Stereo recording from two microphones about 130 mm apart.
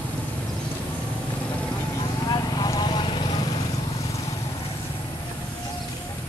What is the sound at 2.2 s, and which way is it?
Vehicle, 30° left (ahead or behind).